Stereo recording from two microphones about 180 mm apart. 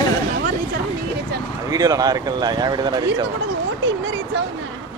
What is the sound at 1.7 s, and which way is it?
Speech, 20° right (ahead or behind).